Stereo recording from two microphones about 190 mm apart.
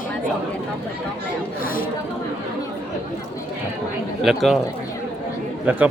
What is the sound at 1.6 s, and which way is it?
Speech, 50° left (ahead or behind).